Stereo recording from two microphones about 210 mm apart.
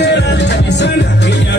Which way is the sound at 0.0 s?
55° left (ahead or behind).